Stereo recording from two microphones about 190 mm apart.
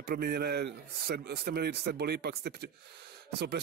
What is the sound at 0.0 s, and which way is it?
Speech, 55° right (ahead or behind).